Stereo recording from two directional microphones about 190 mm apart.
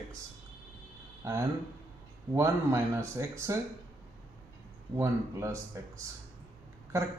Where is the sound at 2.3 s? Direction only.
15° right (ahead or behind).